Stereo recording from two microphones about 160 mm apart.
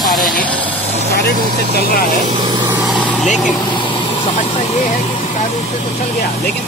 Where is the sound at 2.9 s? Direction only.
5° right (ahead or behind).